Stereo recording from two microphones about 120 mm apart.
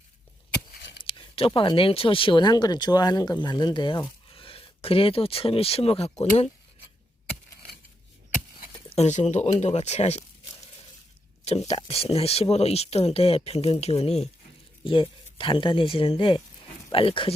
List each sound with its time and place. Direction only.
1.0 s speech: 50° left (ahead or behind)
4.3 s speech: 50° left (ahead or behind); by 6.5 s 65° left (ahead or behind)
8.9 s speech: 75° left (ahead or behind)
11.7 s speech: 55° left (ahead or behind)
15.4 s speech: 45° left (ahead or behind)